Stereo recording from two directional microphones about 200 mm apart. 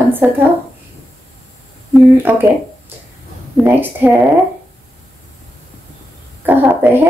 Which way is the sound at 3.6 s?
10° right (ahead or behind).